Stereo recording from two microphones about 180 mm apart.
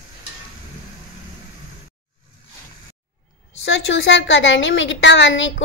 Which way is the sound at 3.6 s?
90° left.